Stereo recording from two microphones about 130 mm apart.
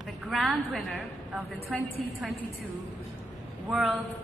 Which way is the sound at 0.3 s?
Centre (ahead or behind).